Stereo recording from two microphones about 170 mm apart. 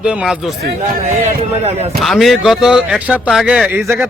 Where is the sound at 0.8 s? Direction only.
45° right (ahead or behind).